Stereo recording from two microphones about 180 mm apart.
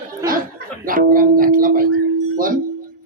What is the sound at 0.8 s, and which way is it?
Music, 50° right (ahead or behind).